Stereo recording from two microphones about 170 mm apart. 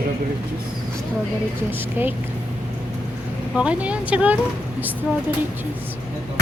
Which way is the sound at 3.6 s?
5° right (ahead or behind).